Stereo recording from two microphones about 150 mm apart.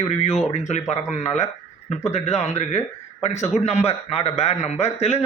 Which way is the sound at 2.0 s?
45° left (ahead or behind).